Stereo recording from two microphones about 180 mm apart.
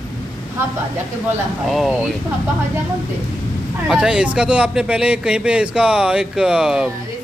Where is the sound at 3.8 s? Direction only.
5° right (ahead or behind).